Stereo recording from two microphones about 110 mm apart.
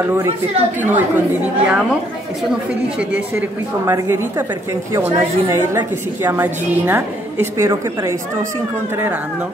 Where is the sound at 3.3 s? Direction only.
20° right (ahead or behind).